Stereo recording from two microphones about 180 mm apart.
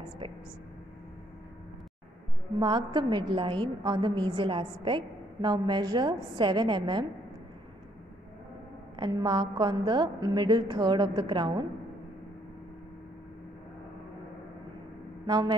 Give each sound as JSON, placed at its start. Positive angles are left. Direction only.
{"t": 0.2, "sound": "a woman's voice", "side_deg": -30}
{"t": 2.6, "sound": "a woman's voice", "side_deg": -25}
{"t": 8.9, "sound": "a woman's voice", "side_deg": -25}
{"t": 15.2, "sound": "a woman's voice", "side_deg": -20}